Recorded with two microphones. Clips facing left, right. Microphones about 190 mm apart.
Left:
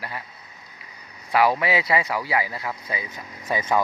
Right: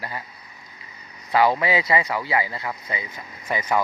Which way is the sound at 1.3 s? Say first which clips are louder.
Right 1 dB; 5° left (ahead or behind).